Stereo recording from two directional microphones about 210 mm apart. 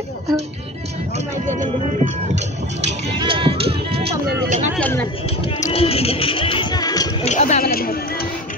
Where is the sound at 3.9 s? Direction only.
50° right (ahead or behind).